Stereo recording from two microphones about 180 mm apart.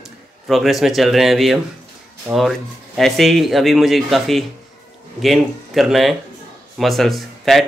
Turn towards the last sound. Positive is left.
turn(degrees=0)  # may be behind; listen again after turning